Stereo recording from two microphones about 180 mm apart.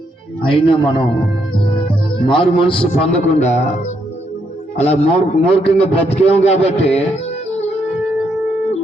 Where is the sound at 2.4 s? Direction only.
30° left (ahead or behind).